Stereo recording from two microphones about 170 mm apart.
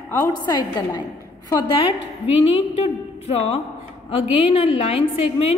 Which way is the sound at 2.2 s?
35° left (ahead or behind).